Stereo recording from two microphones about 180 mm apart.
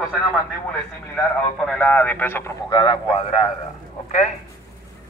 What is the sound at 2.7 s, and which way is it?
Speech, 25° left (ahead or behind).